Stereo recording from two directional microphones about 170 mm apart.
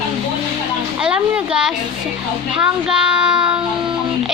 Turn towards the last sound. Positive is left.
turn(degrees=-5)  # may be behind; listen again after turning